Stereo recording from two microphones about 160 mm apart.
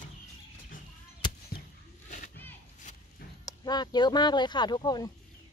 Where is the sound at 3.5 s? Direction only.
25° left (ahead or behind).